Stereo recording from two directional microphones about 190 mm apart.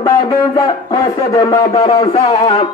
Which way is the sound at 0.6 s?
20° left (ahead or behind).